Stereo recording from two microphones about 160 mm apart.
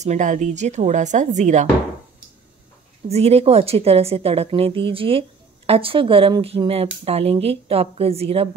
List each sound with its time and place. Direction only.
0.0 s a woman's voice: 50° right (ahead or behind)
3.1 s a woman's voice: 40° right (ahead or behind)